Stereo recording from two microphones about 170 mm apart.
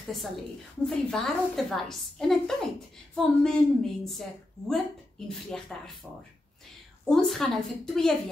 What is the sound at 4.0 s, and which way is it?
A woman's voice, centre (ahead or behind).